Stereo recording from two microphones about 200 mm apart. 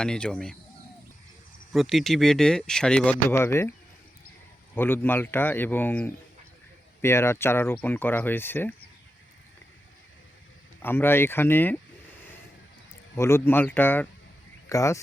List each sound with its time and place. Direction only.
0.0 s speech: 5° left (ahead or behind)
1.7 s speech: centre (ahead or behind)
4.7 s speech: 10° left (ahead or behind)
10.8 s speech: 10° left (ahead or behind)
13.1 s speech: 10° left (ahead or behind)